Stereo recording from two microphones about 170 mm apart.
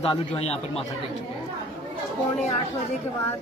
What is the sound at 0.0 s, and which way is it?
Speech, 35° left (ahead or behind).